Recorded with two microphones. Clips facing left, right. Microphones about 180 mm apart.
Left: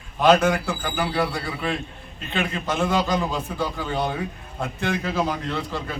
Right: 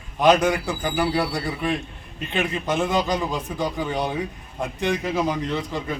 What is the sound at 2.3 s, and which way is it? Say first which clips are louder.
A man's voice: right 2 dB; 15° right (ahead or behind).